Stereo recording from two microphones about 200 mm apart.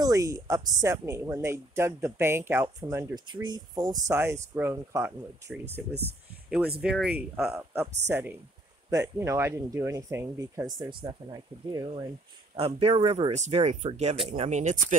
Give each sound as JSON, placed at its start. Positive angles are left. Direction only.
{"t": 0.0, "sound": "speech", "side_deg": -15}
{"t": 6.8, "sound": "speech", "side_deg": -5}